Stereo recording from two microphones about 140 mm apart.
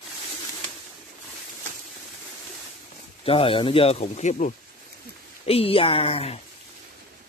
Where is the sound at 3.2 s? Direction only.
40° left (ahead or behind).